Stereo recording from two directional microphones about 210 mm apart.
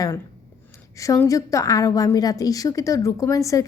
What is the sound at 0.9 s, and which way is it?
A woman's voice, 15° left (ahead or behind).